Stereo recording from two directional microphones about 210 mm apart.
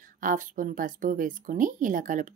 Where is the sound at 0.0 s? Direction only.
40° right (ahead or behind).